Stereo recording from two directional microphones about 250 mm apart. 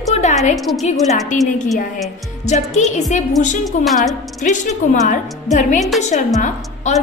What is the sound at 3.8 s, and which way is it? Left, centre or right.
Speech, centre.